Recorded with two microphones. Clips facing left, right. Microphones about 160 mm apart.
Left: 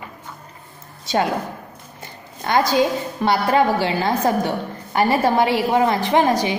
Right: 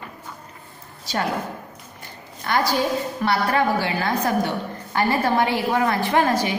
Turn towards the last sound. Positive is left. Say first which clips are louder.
# left 3 dB
turn(degrees=20)  # may be behind; listen again after turning